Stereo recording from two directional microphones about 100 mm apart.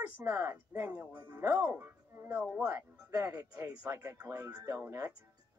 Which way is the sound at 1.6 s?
20° right (ahead or behind).